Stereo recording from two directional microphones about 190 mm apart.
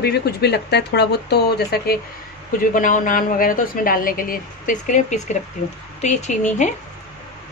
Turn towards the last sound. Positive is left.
turn(degrees=40)  # may be behind; listen again after turning